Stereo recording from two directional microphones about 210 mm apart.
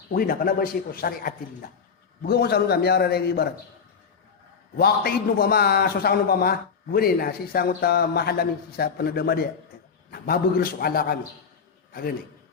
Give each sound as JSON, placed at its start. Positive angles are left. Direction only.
{"t": 0.1, "sound": "a man's voice", "side_deg": 45}
{"t": 4.8, "sound": "a man's voice", "side_deg": 50}